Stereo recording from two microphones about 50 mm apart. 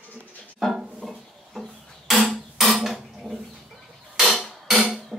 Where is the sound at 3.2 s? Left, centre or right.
Centre.